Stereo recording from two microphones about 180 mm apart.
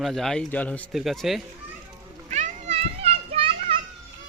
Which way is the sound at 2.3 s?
40° right (ahead or behind).